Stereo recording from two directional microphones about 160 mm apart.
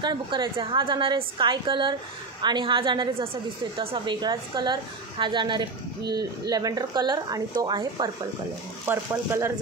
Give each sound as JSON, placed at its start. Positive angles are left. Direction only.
{"t": 0.0, "sound": "a woman's voice", "side_deg": -25}
{"t": 8.8, "sound": "speech", "side_deg": -15}